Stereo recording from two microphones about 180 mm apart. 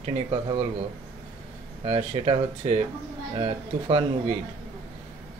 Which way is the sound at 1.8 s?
30° right (ahead or behind).